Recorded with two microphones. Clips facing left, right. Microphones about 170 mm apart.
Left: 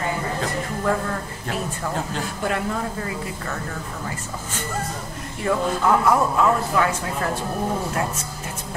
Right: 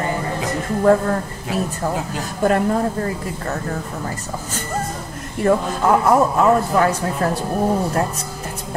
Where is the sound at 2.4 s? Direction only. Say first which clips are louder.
Right 9 dB; 40° right (ahead or behind).